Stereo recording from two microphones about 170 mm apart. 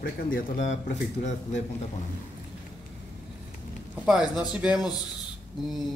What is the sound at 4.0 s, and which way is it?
Speech, 5° right (ahead or behind).